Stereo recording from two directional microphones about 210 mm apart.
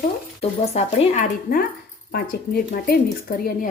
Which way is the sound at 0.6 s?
30° left (ahead or behind).